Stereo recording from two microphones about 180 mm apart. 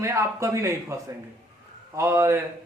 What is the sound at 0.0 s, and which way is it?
Speech, 15° right (ahead or behind).